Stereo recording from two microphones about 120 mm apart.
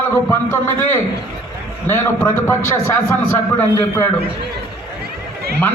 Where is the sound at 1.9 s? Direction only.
20° left (ahead or behind).